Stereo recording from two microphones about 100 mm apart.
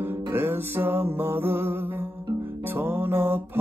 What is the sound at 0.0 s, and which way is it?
Music, 20° right (ahead or behind).